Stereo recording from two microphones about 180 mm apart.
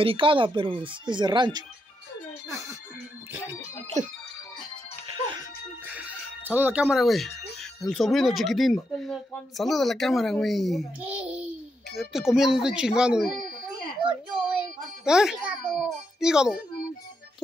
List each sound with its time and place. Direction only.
0.0 s speech: 30° right (ahead or behind)
4.0 s speech: 40° right (ahead or behind)
5.9 s music: 10° right (ahead or behind)
7.8 s speech: centre (ahead or behind)
15.0 s speech: 5° right (ahead or behind)